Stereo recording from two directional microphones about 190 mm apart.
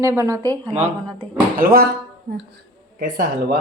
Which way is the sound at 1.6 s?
50° right (ahead or behind).